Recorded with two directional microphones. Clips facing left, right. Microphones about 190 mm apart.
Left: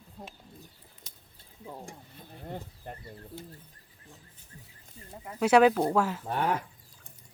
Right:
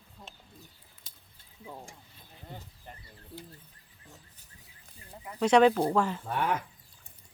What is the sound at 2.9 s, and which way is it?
Bird, 55° left (ahead or behind).